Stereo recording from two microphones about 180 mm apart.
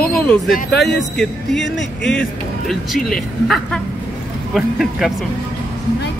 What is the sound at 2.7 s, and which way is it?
Speech, centre (ahead or behind).